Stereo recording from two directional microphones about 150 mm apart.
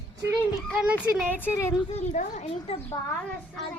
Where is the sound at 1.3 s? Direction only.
15° left (ahead or behind).